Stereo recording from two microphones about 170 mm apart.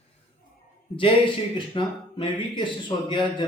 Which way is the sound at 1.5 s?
30° left (ahead or behind).